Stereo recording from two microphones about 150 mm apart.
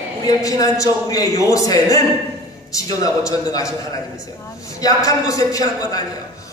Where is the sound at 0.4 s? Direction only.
20° left (ahead or behind).